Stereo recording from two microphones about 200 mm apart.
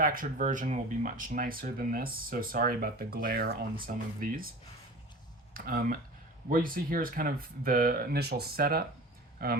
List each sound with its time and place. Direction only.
0.0 s speech: 45° right (ahead or behind)
5.5 s speech: 45° right (ahead or behind)